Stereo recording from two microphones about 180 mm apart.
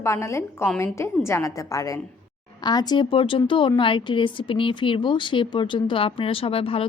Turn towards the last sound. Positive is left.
turn(degrees=30)  # may be behind; listen again after turning